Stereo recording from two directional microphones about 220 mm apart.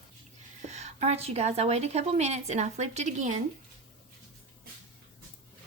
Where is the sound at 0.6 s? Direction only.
30° right (ahead or behind).